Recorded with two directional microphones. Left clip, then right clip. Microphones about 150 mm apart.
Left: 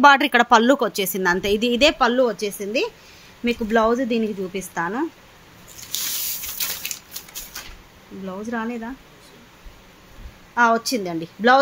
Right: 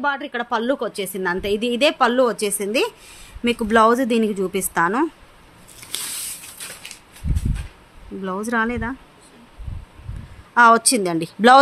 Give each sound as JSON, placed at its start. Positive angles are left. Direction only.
{"t": 0.0, "sound": "speech", "side_deg": 40}
{"t": 0.7, "sound": "a woman's voice", "side_deg": 15}
{"t": 2.0, "sound": "a woman's voice", "side_deg": -15}
{"t": 2.2, "sound": "a woman's voice", "side_deg": -35}
{"t": 8.3, "sound": "a woman's voice", "side_deg": -40}
{"t": 10.5, "sound": "a woman's voice", "side_deg": -35}